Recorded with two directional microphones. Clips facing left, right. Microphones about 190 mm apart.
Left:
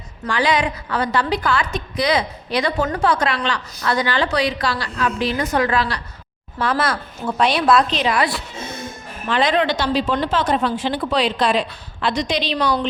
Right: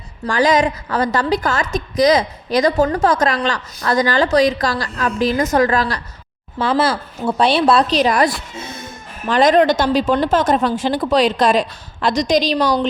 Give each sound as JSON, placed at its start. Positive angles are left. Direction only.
{"t": 0.3, "sound": "a woman's voice", "side_deg": -45}
{"t": 6.6, "sound": "a woman's voice", "side_deg": -30}